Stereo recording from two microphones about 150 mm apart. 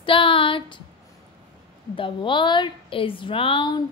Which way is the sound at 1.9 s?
35° left (ahead or behind).